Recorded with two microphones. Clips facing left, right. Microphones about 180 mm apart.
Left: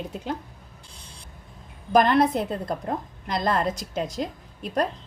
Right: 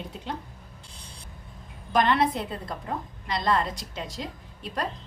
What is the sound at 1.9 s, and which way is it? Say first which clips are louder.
A woman's voice: left 4 dB; 45° left (ahead or behind).